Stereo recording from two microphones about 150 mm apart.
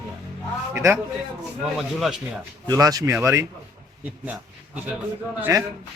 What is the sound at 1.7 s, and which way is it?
Speech, centre (ahead or behind).